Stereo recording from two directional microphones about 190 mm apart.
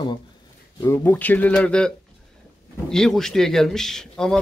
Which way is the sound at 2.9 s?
Centre (ahead or behind).